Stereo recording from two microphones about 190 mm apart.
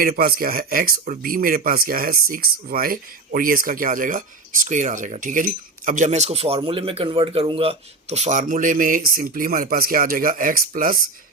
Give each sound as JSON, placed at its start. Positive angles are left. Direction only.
{"t": 0.0, "sound": "speech", "side_deg": -50}